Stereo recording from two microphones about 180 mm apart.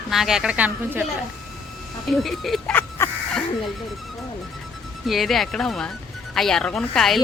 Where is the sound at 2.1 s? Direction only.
Centre (ahead or behind).